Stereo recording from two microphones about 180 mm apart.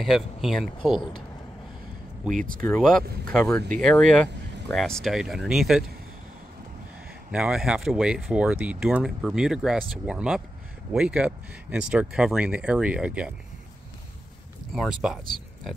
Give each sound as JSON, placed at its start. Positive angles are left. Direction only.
{"t": 0.0, "sound": "speech", "side_deg": 0}
{"t": 2.3, "sound": "speech", "side_deg": -50}
{"t": 2.8, "sound": "speech", "side_deg": 5}
{"t": 7.2, "sound": "speech", "side_deg": -5}
{"t": 14.7, "sound": "speech", "side_deg": 0}